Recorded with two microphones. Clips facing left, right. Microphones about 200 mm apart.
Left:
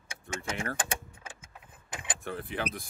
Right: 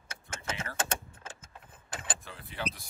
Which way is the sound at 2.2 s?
60° left (ahead or behind).